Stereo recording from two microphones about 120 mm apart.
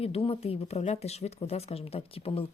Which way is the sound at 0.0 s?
55° left (ahead or behind).